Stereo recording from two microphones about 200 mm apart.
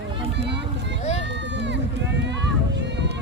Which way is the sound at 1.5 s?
60° right (ahead or behind).